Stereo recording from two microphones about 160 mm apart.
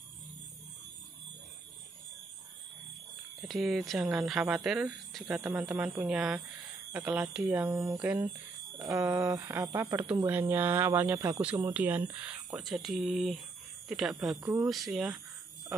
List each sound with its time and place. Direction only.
3.4 s speech: centre (ahead or behind)
5.4 s speech: 15° right (ahead or behind)
14.3 s speech: 15° right (ahead or behind)
14.7 s speech: centre (ahead or behind)